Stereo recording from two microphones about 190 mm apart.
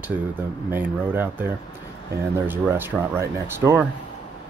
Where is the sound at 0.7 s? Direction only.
10° right (ahead or behind).